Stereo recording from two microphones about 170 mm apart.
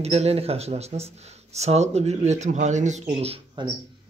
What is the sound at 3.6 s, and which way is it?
Speech, 25° right (ahead or behind).